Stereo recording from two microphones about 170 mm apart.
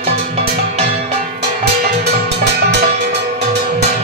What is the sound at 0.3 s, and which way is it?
Music, 35° right (ahead or behind).